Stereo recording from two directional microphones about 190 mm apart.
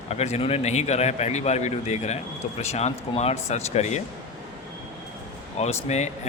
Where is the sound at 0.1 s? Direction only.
35° left (ahead or behind).